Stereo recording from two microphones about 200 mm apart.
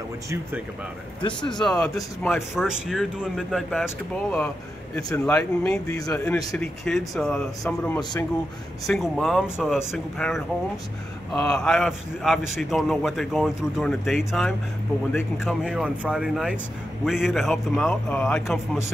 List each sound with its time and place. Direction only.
1.2 s speech: 20° left (ahead or behind)
2.2 s a man's voice: centre (ahead or behind)
8.0 s speech: 20° left (ahead or behind)
8.8 s a man's voice: centre (ahead or behind)